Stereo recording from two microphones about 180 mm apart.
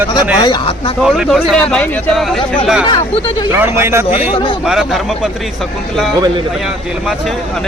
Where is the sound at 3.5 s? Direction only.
15° right (ahead or behind).